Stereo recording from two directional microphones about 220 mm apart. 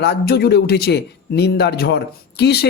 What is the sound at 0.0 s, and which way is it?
Speech, 45° left (ahead or behind).